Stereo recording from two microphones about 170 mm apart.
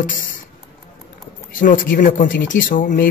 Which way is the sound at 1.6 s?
50° left (ahead or behind).